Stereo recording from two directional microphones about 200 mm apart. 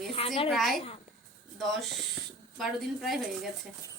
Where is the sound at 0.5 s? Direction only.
Centre (ahead or behind).